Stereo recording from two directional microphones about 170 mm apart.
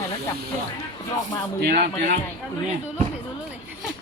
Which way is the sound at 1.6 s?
70° right (ahead or behind).